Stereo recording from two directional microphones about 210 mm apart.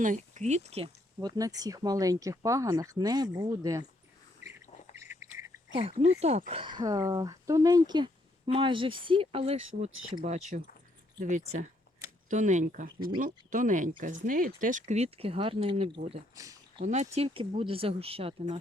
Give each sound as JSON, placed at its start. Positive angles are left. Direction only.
{"t": 0.0, "sound": "speech", "side_deg": -35}
{"t": 1.4, "sound": "speech", "side_deg": -15}
{"t": 4.9, "sound": "bird", "side_deg": -15}
{"t": 5.7, "sound": "speech", "side_deg": -30}
{"t": 16.3, "sound": "a sound", "side_deg": -15}
{"t": 16.8, "sound": "speech", "side_deg": -35}